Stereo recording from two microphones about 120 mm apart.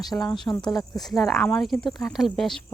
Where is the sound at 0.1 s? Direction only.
20° left (ahead or behind).